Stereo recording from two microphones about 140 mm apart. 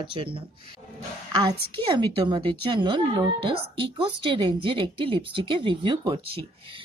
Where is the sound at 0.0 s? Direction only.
40° right (ahead or behind).